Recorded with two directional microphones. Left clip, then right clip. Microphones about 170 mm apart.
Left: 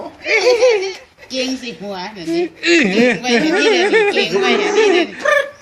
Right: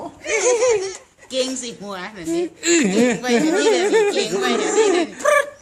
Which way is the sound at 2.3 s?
40° right (ahead or behind).